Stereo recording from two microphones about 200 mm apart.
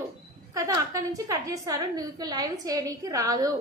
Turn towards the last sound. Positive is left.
turn(degrees=-15)  # may be behind; listen again after turning